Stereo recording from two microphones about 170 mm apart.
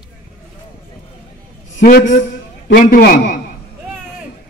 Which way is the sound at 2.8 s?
60° left (ahead or behind).